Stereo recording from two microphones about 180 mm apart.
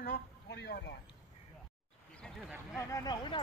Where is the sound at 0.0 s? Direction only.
65° left (ahead or behind).